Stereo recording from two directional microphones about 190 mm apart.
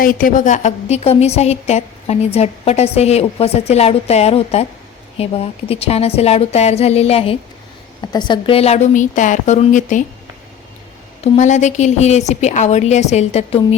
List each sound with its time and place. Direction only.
0.0 s a woman's voice: 45° left (ahead or behind)
11.2 s a woman's voice: 40° left (ahead or behind)